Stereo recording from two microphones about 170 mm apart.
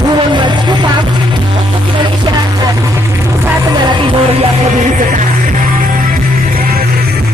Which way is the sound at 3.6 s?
30° right (ahead or behind).